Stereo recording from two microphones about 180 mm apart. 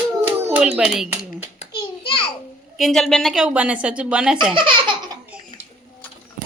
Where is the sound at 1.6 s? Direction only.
30° left (ahead or behind).